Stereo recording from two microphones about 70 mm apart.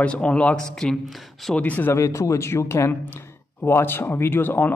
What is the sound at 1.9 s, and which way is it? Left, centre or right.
A man's voice, left.